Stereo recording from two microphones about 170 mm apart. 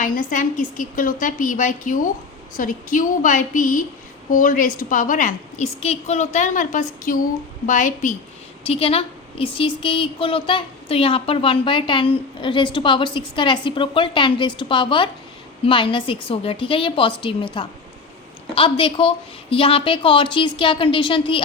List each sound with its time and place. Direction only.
0.0 s a woman's voice: 50° left (ahead or behind)
8.6 s a woman's voice: 35° left (ahead or behind)